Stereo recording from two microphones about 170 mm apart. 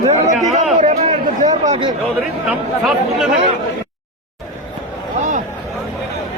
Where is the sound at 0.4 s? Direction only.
45° right (ahead or behind).